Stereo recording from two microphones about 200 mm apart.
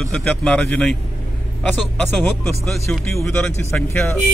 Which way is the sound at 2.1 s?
Centre (ahead or behind).